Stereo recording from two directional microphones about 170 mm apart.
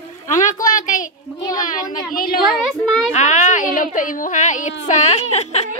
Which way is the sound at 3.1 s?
45° left (ahead or behind).